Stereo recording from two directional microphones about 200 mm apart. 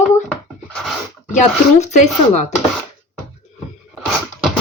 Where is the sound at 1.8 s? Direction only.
35° left (ahead or behind).